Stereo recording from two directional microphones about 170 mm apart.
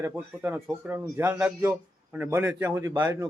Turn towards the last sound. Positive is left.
turn(degrees=-15)  # may be behind; listen again after turning